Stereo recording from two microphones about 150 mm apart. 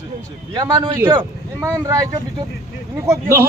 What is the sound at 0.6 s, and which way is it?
A man's voice, 20° right (ahead or behind).